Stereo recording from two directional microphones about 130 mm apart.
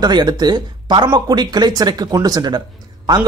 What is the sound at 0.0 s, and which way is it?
A man's voice, 35° right (ahead or behind).